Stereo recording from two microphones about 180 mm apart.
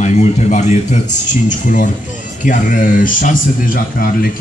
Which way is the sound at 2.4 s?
45° left (ahead or behind).